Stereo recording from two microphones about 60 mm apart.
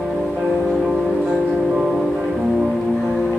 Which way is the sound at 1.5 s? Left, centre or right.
Centre.